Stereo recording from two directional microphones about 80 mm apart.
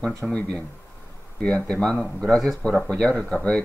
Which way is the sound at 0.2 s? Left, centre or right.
Centre.